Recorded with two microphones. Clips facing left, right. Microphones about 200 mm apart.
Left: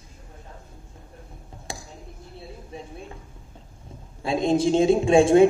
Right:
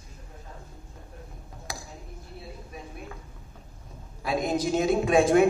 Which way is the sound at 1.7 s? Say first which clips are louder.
Left 3 dB; 25° left (ahead or behind).